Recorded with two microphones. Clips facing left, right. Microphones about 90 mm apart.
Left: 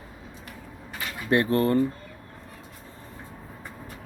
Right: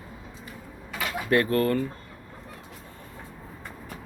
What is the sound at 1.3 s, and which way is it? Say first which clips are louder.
Speech: left 1 dB; 25° left (ahead or behind).